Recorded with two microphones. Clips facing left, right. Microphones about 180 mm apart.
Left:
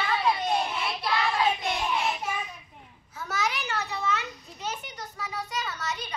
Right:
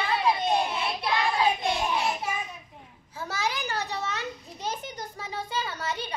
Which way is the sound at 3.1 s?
30° right (ahead or behind).